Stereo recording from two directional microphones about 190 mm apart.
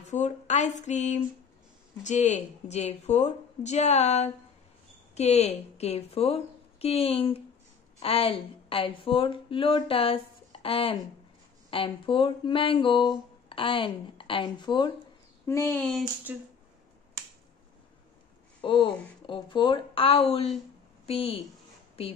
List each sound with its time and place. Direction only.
0.1 s a woman's voice: 40° left (ahead or behind)
15.4 s speech: 15° left (ahead or behind)
16.3 s speech: 10° right (ahead or behind)
18.6 s a woman's voice: 25° left (ahead or behind)